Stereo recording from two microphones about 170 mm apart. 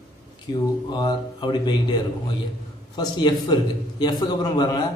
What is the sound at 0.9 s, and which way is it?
Speech, 25° left (ahead or behind).